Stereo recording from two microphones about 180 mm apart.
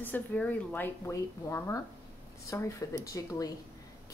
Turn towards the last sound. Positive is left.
turn(degrees=15)  # may be behind; listen again after turning